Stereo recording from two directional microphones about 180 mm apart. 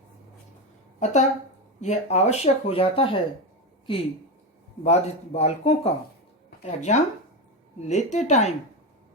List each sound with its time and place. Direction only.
0.9 s a woman's voice: 40° left (ahead or behind)
4.8 s speech: 40° left (ahead or behind)